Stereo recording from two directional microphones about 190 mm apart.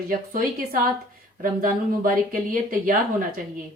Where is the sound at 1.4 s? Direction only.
45° right (ahead or behind).